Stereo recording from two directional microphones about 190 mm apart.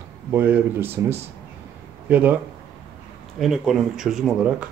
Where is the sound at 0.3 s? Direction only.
10° right (ahead or behind).